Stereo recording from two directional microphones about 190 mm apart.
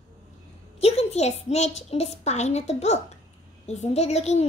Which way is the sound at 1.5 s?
35° left (ahead or behind).